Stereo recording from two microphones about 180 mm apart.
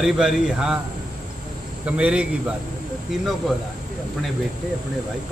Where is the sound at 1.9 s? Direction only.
5° right (ahead or behind).